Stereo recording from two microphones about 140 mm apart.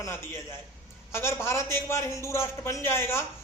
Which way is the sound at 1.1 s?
20° left (ahead or behind).